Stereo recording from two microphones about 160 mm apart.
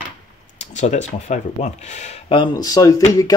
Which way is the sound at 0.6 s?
45° left (ahead or behind).